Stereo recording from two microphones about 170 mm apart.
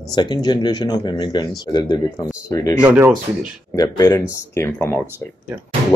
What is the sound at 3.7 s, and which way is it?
Speech, 20° left (ahead or behind).